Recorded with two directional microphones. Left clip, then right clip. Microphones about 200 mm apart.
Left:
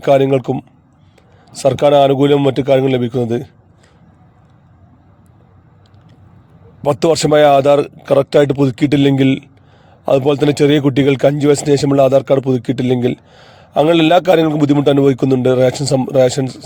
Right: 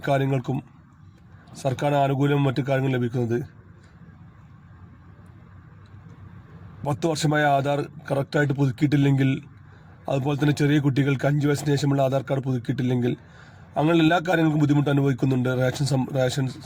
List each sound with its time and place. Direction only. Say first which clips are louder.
0.0 s a man's voice: left 13 dB; 40° left (ahead or behind)
6.8 s speech: left 13 dB; 45° left (ahead or behind)